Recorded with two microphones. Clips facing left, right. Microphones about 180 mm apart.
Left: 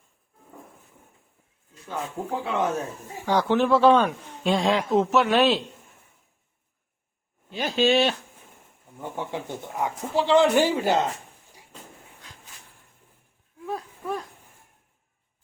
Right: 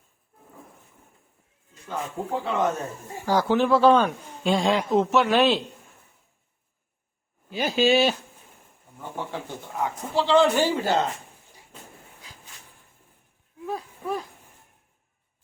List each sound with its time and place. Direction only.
2.4 s speech: 5° left (ahead or behind)
7.5 s speech: 5° right (ahead or behind)
9.0 s speech: 15° left (ahead or behind)
13.7 s a sound: centre (ahead or behind)